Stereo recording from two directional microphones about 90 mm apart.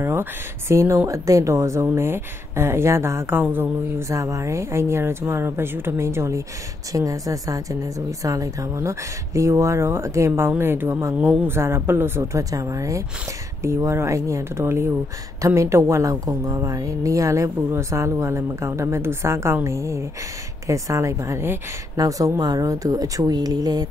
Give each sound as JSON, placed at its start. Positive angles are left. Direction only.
{"t": 0.0, "sound": "a woman's voice", "side_deg": -30}